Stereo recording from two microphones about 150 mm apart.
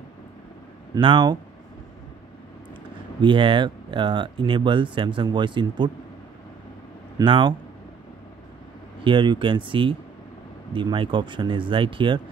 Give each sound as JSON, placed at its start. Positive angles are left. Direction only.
{"t": 0.9, "sound": "speech", "side_deg": -30}
{"t": 3.2, "sound": "speech", "side_deg": -35}
{"t": 7.2, "sound": "speech", "side_deg": -30}
{"t": 9.0, "sound": "speech", "side_deg": -30}